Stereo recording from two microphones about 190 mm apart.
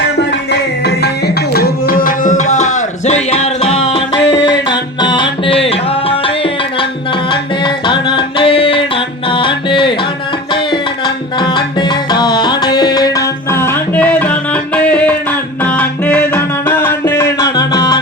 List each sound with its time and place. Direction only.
1.5 s music: 50° left (ahead or behind); by 3.8 s 35° left (ahead or behind)
4.2 s music: 65° left (ahead or behind)
4.9 s music: 25° left (ahead or behind)